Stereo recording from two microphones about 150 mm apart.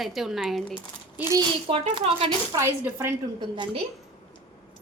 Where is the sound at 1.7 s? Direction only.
40° right (ahead or behind).